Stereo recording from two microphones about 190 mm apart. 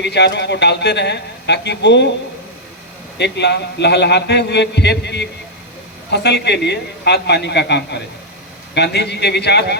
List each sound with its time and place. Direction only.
0.0 s a man's voice: 65° left (ahead or behind)
3.2 s a man's voice: 65° left (ahead or behind)